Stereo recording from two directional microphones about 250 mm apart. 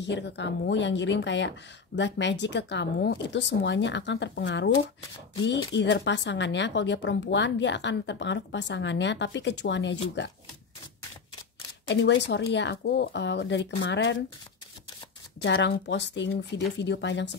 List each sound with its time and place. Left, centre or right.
0.0 s a woman's voice: left
5.8 s a woman's voice: left
11.9 s a woman's voice: left
15.4 s a woman's voice: left